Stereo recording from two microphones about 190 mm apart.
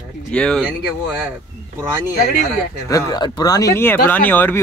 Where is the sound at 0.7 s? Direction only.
5° right (ahead or behind).